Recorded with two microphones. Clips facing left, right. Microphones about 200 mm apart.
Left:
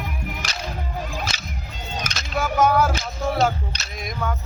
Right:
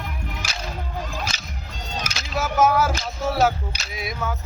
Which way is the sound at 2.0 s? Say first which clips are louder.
Left 1 dB; 10° right (ahead or behind).